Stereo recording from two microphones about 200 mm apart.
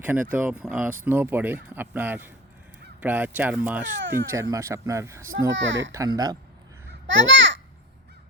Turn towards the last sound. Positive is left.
turn(degrees=-65)  # may be behind; listen again after turning